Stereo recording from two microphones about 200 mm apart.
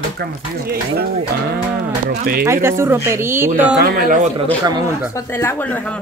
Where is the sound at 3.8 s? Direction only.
45° right (ahead or behind).